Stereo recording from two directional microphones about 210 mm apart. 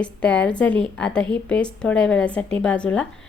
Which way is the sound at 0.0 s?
5° left (ahead or behind).